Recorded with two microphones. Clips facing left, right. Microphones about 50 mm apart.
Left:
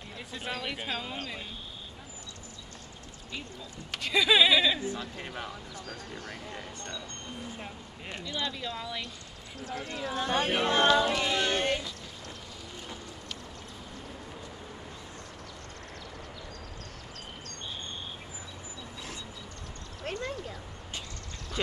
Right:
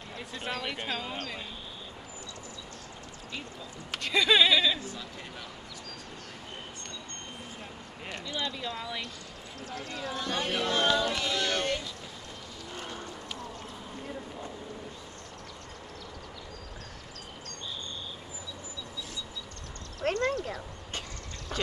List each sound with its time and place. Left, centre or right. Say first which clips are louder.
0.3 s speech: even; centre
3.9 s speech: even; centre
4.7 s speech: left 5 dB; left
8.6 s speech: even; centre
9.7 s speech: left 2 dB; left
20.0 s a sound: right 7 dB; right